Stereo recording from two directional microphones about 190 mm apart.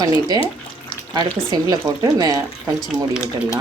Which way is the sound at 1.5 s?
20° right (ahead or behind).